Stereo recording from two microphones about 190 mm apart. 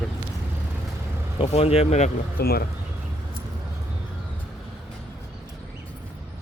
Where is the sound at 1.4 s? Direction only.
30° left (ahead or behind).